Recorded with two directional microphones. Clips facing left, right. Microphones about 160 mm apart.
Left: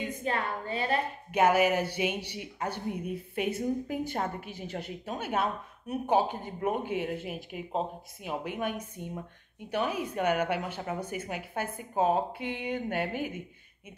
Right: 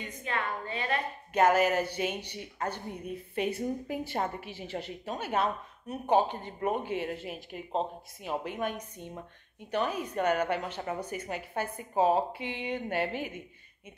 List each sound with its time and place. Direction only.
0.2 s a woman's voice: 35° left (ahead or behind)
1.3 s a woman's voice: 5° left (ahead or behind)